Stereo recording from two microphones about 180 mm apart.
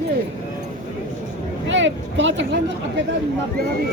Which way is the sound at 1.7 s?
90° right.